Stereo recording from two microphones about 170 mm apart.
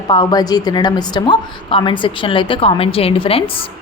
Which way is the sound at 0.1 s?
25° left (ahead or behind).